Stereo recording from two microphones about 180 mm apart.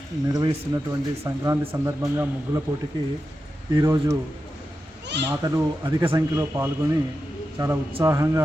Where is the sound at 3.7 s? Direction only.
20° right (ahead or behind).